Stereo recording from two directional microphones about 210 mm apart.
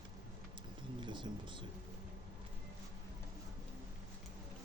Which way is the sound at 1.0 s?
20° right (ahead or behind).